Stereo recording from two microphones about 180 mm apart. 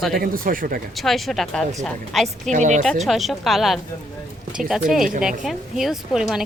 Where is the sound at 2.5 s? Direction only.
40° right (ahead or behind).